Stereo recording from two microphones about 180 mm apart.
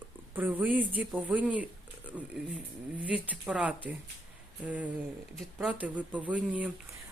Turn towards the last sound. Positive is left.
turn(degrees=-5)  # may be behind; listen again after turning